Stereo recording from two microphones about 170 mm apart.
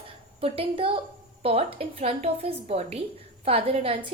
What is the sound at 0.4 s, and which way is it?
A woman's voice, 30° right (ahead or behind).